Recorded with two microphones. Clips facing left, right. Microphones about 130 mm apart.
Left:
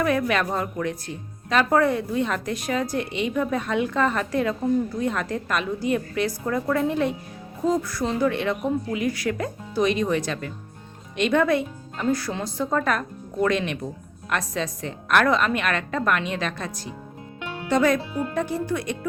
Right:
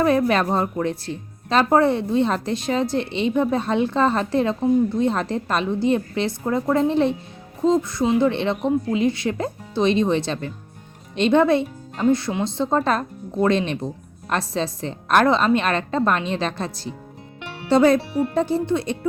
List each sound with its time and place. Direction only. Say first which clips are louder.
0.0 s a woman's voice: right 4 dB; 30° right (ahead or behind)